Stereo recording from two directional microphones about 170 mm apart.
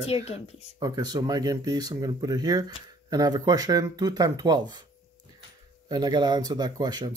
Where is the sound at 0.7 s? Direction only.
25° right (ahead or behind).